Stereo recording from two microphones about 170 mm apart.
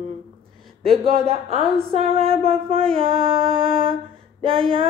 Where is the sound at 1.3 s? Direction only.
35° right (ahead or behind).